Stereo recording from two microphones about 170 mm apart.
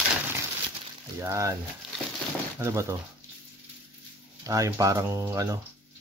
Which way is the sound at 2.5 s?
15° right (ahead or behind).